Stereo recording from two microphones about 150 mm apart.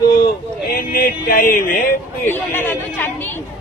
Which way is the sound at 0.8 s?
85° left.